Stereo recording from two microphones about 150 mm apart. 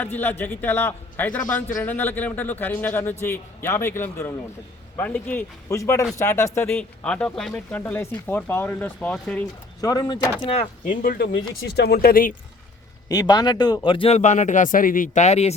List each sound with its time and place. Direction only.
0.0 s a man's voice: 15° left (ahead or behind)
9.8 s speech: 25° left (ahead or behind)
10.8 s speech: 75° left (ahead or behind)
11.6 s speech: 90° left
13.1 s speech: 25° left (ahead or behind)
14.2 s speech: 55° left (ahead or behind)